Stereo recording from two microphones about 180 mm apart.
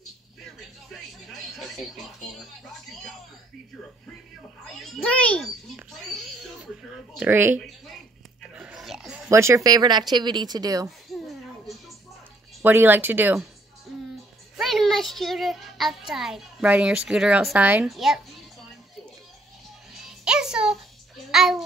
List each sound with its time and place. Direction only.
0.8 s television: centre (ahead or behind)
2.6 s music: 5° left (ahead or behind)
4.6 s a child's voice: centre (ahead or behind)
6.6 s speech: 5° right (ahead or behind)
8.4 s a sound: 5° right (ahead or behind)
9.3 s speech: 15° right (ahead or behind)
11.1 s a sound: centre (ahead or behind)
12.6 s speech: 10° right (ahead or behind)
13.9 s music: centre (ahead or behind)
14.6 s a child's voice: centre (ahead or behind)
19.9 s music: centre (ahead or behind)
21.3 s a child's voice: centre (ahead or behind)